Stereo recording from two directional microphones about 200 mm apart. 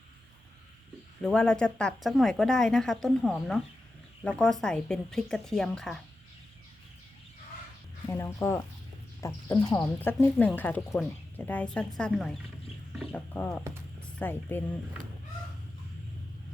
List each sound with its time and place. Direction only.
1.2 s speech: 5° left (ahead or behind)
8.0 s speech: 15° left (ahead or behind)